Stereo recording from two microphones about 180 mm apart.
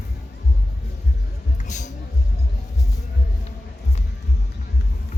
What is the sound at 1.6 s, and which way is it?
Music, 40° left (ahead or behind).